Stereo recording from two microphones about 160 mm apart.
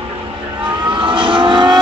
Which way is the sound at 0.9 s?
30° right (ahead or behind).